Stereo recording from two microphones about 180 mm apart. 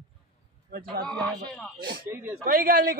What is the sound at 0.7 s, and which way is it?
Speech, 55° right (ahead or behind).